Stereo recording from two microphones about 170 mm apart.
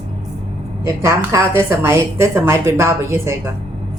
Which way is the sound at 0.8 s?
20° right (ahead or behind).